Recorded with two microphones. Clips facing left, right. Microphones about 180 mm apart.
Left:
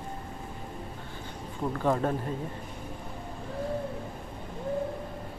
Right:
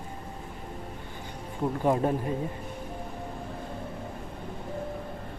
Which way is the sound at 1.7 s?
15° right (ahead or behind).